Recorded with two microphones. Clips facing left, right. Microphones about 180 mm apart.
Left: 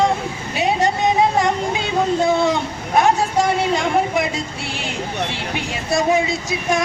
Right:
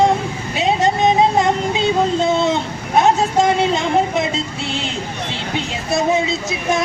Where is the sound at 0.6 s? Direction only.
20° right (ahead or behind).